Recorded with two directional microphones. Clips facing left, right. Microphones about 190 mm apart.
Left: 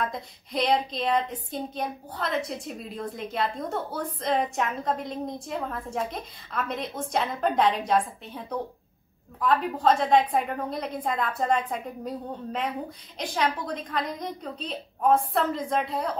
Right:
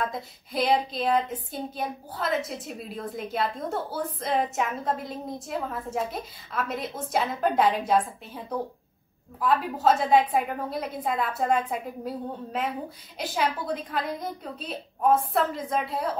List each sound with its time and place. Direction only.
0.0 s a woman's voice: centre (ahead or behind)